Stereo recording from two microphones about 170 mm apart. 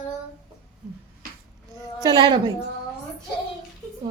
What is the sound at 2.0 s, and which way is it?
Speech, 25° right (ahead or behind).